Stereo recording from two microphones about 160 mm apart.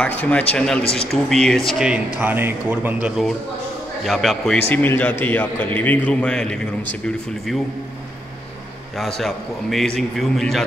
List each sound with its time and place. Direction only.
0.0 s a man's voice: 10° left (ahead or behind)
4.6 s a man's voice: 15° left (ahead or behind)
8.9 s a man's voice: centre (ahead or behind)